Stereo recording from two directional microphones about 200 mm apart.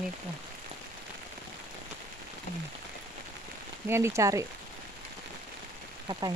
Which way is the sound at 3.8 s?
10° right (ahead or behind).